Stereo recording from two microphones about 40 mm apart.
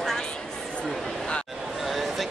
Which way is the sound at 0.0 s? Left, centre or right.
Centre.